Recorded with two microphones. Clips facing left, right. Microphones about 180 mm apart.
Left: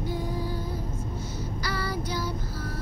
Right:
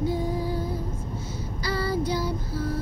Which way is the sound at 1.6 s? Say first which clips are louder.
Right 7 dB; 25° right (ahead or behind).